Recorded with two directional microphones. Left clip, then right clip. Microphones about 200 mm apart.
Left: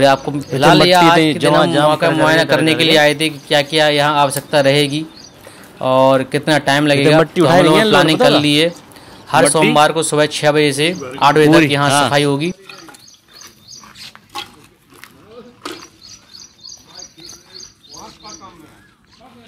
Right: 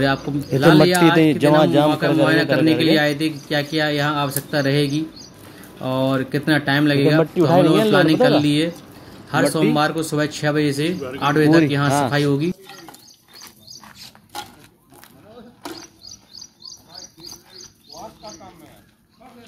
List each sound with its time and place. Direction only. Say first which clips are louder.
0.6 s a man's voice: left 5 dB; 5° left (ahead or behind)
1.2 s a man's voice: left 2 dB; 15° right (ahead or behind)
1.9 s a man's voice: left 5 dB; 5° left (ahead or behind)